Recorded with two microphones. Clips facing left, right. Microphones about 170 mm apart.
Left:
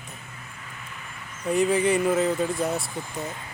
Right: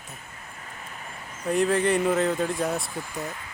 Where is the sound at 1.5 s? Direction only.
Centre (ahead or behind).